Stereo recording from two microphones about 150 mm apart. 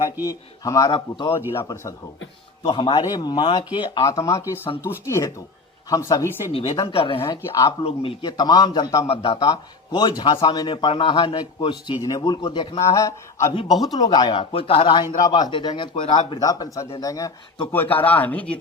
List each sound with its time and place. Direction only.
0.3 s a man's voice: 25° left (ahead or behind)
1.5 s speech: 20° left (ahead or behind)
2.6 s a man's voice: 35° left (ahead or behind)
6.5 s speech: 40° left (ahead or behind)
7.4 s a man's voice: 20° left (ahead or behind)
7.9 s speech: 40° left (ahead or behind)
8.3 s a man's voice: 25° left (ahead or behind)
9.0 s speech: 40° left (ahead or behind)
9.4 s speech: 25° left (ahead or behind)
12.9 s a man's voice: 20° left (ahead or behind)
13.7 s speech: centre (ahead or behind)
14.1 s a man's voice: 30° left (ahead or behind)
17.7 s speech: 10° left (ahead or behind)